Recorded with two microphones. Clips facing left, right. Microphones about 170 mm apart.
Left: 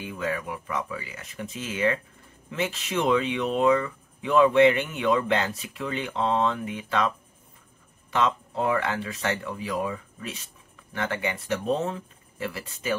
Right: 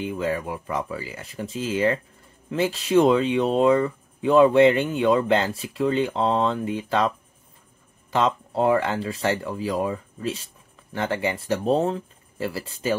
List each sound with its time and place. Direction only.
0.0 s speech: 30° right (ahead or behind)
8.1 s speech: 35° right (ahead or behind)